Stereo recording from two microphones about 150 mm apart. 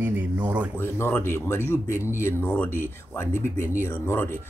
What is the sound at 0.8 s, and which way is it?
Speech, 15° left (ahead or behind).